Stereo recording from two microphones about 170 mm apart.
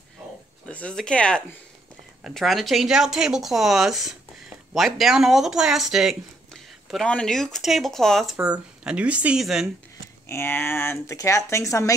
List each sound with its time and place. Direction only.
0.7 s speech: 5° left (ahead or behind)
10.2 s speech: 15° left (ahead or behind)